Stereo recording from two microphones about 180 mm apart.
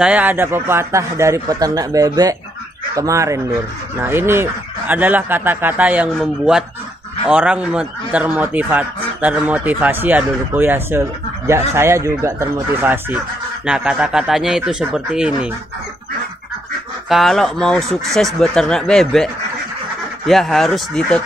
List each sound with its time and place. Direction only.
0.0 s speech: 10° right (ahead or behind)
17.1 s speech: centre (ahead or behind)
20.2 s speech: centre (ahead or behind)